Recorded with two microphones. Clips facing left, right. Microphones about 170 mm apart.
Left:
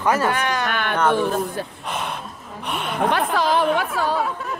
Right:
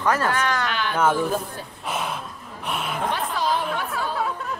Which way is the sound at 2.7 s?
Centre (ahead or behind).